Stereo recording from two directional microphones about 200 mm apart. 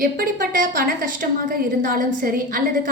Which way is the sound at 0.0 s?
45° right (ahead or behind).